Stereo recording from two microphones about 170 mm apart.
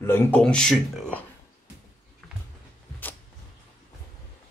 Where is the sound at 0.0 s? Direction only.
15° left (ahead or behind).